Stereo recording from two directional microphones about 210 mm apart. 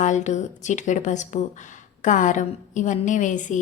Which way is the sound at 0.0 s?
35° left (ahead or behind).